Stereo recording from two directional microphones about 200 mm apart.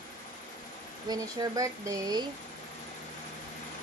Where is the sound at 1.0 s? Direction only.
20° right (ahead or behind).